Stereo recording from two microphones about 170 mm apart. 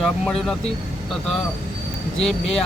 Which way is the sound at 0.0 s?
Centre (ahead or behind).